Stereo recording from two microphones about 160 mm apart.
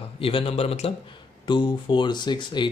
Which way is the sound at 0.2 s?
35° left (ahead or behind).